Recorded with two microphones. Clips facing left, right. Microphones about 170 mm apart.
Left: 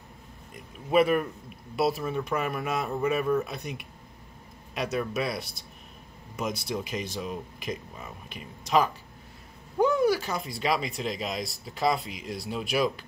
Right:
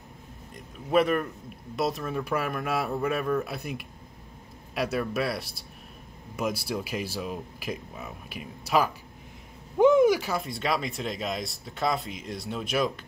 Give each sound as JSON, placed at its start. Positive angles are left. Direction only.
{"t": 0.8, "sound": "speech", "side_deg": 5}
{"t": 9.8, "sound": "a sound", "side_deg": -20}
{"t": 10.3, "sound": "speech", "side_deg": 0}